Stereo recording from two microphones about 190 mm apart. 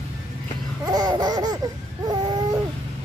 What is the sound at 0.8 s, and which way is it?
Laughter, 20° right (ahead or behind).